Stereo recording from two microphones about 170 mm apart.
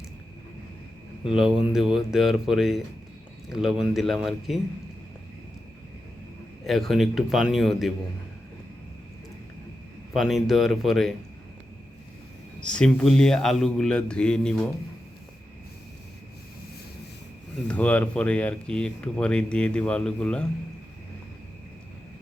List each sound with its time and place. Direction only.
1.3 s speech: 5° right (ahead or behind)
6.7 s speech: centre (ahead or behind)
10.1 s speech: centre (ahead or behind)
12.5 s speech: 5° left (ahead or behind)
17.7 s speech: 10° left (ahead or behind)